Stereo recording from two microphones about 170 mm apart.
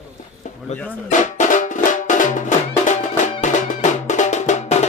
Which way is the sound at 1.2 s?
50° left (ahead or behind).